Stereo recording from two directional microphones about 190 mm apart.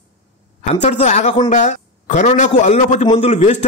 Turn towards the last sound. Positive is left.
turn(degrees=35)  # may be behind; listen again after turning